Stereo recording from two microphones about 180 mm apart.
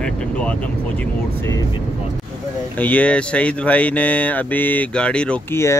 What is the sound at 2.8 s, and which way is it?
Speech, 10° left (ahead or behind).